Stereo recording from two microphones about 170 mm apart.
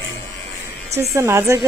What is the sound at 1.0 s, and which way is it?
Speech, 15° right (ahead or behind).